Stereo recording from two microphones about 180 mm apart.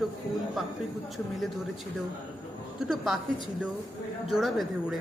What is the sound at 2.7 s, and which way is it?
Speech, centre (ahead or behind).